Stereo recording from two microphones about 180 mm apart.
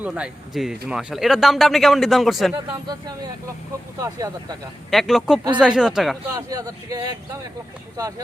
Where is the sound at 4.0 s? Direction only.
20° right (ahead or behind).